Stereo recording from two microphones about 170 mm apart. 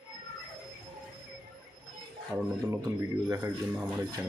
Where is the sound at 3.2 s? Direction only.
15° right (ahead or behind).